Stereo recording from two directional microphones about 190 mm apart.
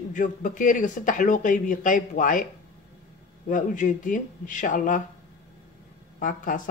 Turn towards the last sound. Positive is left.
turn(degrees=45)  # may be behind; listen again after turning